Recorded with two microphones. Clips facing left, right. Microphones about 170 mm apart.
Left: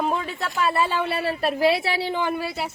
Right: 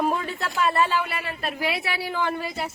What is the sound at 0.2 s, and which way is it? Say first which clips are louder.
Speech: even; 5° left (ahead or behind).